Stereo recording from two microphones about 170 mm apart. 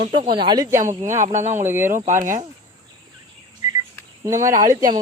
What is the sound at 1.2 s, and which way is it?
Speech, 45° right (ahead or behind).